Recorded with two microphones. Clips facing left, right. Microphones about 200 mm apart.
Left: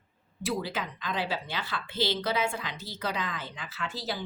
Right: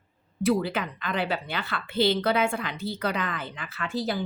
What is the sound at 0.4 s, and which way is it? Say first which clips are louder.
A woman's voice: right 7 dB; 60° right (ahead or behind).